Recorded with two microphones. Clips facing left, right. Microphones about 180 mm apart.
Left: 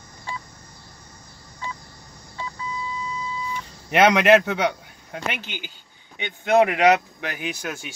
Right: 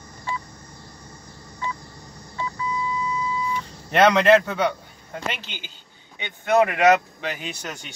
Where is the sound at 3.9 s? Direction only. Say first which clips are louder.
Even; 15° left (ahead or behind).